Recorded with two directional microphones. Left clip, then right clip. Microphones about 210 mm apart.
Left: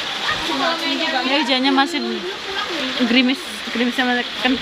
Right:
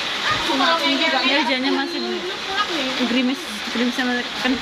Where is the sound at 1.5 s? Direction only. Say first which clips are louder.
Left 4 dB; 20° left (ahead or behind).